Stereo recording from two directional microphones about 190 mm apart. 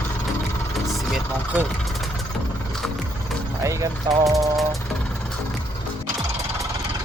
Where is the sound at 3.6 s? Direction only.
15° right (ahead or behind).